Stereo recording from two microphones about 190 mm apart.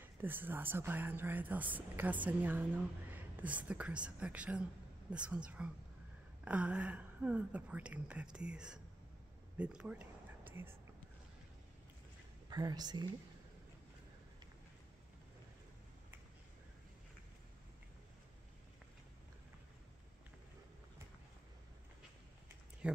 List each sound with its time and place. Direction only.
0.0 s a woman's voice: 10° right (ahead or behind)
9.6 s a sound: 5° right (ahead or behind)
12.4 s a woman's voice: 20° right (ahead or behind)
22.8 s speech: 5° right (ahead or behind)